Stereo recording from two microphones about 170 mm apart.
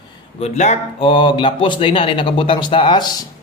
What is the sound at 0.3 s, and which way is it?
Speech, 40° left (ahead or behind).